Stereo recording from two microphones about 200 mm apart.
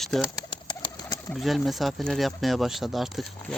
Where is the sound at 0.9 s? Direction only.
20° left (ahead or behind).